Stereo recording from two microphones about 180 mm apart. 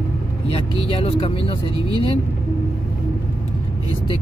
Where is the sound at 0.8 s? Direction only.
30° left (ahead or behind).